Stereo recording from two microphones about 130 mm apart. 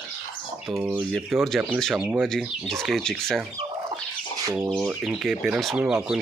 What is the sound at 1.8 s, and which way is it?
Speech, centre (ahead or behind).